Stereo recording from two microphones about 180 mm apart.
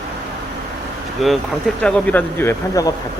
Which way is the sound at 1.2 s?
Centre (ahead or behind).